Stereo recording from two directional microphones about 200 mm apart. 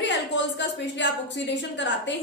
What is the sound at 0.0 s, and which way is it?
A woman's voice, 60° left (ahead or behind).